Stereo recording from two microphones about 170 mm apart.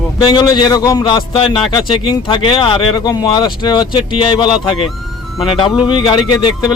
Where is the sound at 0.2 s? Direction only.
25° left (ahead or behind).